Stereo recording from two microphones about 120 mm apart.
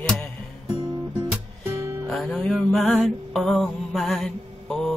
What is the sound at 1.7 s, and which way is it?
Music, 25° right (ahead or behind).